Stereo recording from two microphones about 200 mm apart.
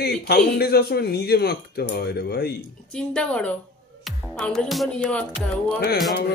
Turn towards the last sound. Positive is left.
turn(degrees=50)  # may be behind; listen again after turning